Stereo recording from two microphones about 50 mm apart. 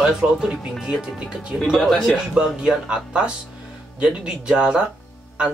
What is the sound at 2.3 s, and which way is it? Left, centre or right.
Speech, centre.